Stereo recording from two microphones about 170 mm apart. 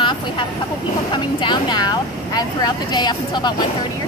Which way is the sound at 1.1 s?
25° left (ahead or behind).